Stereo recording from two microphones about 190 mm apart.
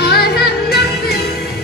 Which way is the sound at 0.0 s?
55° left (ahead or behind).